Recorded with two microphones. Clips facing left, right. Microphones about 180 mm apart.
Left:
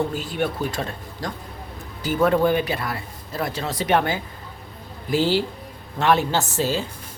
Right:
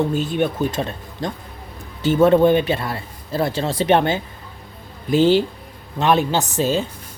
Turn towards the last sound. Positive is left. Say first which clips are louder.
# right 3 dB
turn(degrees=-20)  # may be behind; listen again after turning